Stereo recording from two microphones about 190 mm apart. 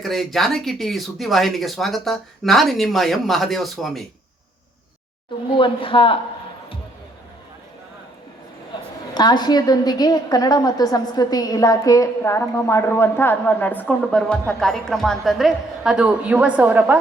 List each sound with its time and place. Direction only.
0.0 s speech: centre (ahead or behind)
5.5 s speech: 25° left (ahead or behind)
9.1 s a woman's voice: 20° left (ahead or behind); by 17.0 s 10° right (ahead or behind)